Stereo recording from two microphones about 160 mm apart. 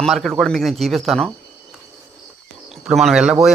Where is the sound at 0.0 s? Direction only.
Centre (ahead or behind).